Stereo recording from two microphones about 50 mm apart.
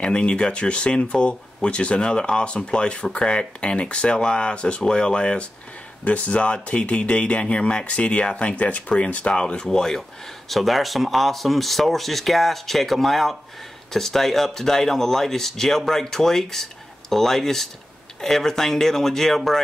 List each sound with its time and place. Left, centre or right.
0.0 s speech: centre
9.7 s speech: centre